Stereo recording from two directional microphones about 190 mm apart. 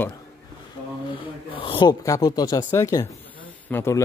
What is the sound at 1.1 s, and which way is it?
Speech, 30° left (ahead or behind).